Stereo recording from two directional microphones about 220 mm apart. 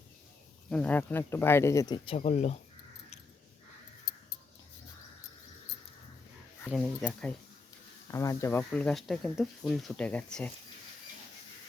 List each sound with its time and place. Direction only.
0.7 s speech: 5° left (ahead or behind); by 2.6 s 30° left (ahead or behind)
6.7 s speech: 5° left (ahead or behind)